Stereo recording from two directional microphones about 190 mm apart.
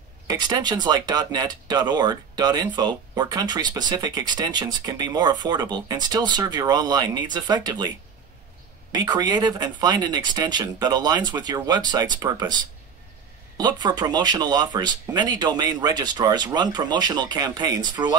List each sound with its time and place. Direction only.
0.3 s speech: 20° right (ahead or behind)
8.9 s speech: 20° right (ahead or behind)
13.6 s speech: 20° right (ahead or behind)